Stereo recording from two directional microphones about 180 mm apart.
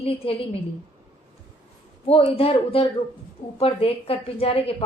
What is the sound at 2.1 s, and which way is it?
A woman's voice, 30° left (ahead or behind).